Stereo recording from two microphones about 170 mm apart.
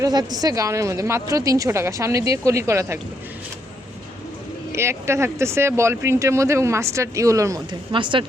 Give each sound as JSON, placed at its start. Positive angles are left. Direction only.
{"t": 0.0, "sound": "a woman's voice", "side_deg": -25}
{"t": 4.7, "sound": "speech", "side_deg": -15}